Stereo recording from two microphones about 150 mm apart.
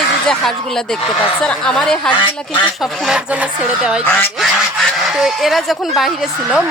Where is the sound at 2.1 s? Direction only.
30° left (ahead or behind).